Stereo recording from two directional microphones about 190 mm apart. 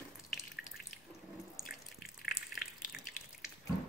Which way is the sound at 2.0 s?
50° left (ahead or behind).